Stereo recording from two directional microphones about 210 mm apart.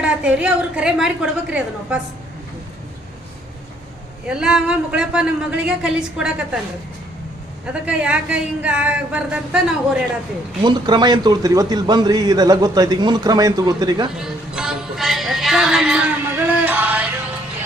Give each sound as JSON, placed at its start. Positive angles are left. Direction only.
{"t": 0.0, "sound": "a woman's voice", "side_deg": -5}
{"t": 4.3, "sound": "a woman's voice", "side_deg": -5}
{"t": 7.6, "sound": "a woman's voice", "side_deg": -5}
{"t": 10.6, "sound": "a man's voice", "side_deg": -20}
{"t": 14.2, "sound": "music", "side_deg": -5}